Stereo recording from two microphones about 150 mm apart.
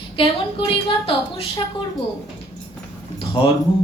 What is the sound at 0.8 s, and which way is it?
Speech, 35° left (ahead or behind).